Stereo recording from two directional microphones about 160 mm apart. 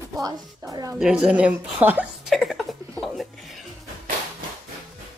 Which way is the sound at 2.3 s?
Centre (ahead or behind).